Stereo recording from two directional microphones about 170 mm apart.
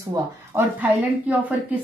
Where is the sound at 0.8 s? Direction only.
10° right (ahead or behind).